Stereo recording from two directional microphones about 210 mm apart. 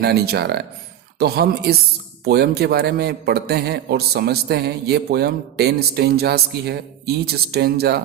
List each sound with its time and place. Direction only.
0.0 s a man's voice: 50° right (ahead or behind)